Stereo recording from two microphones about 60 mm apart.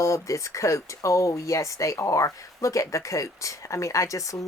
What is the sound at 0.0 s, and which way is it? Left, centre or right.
Speech, left.